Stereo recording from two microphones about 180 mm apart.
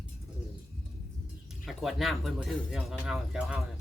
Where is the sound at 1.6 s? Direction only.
Centre (ahead or behind).